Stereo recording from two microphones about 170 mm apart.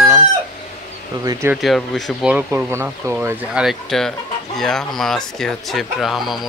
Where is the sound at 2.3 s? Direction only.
15° right (ahead or behind).